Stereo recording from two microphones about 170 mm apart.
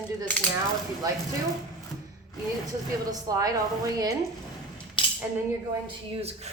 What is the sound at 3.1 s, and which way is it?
A woman's voice, 20° right (ahead or behind).